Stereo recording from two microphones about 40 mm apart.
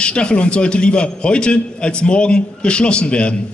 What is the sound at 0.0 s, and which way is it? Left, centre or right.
A man's voice, left.